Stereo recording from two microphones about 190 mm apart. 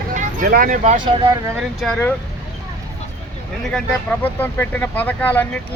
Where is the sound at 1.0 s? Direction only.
25° right (ahead or behind).